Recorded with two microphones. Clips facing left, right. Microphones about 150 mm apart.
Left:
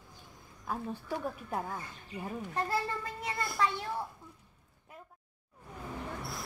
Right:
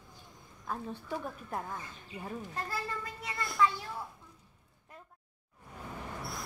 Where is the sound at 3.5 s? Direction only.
25° left (ahead or behind).